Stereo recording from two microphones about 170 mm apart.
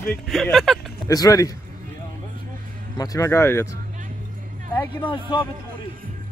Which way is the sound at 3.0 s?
20° left (ahead or behind).